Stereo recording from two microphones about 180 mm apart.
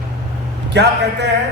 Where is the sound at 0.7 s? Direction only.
70° right (ahead or behind).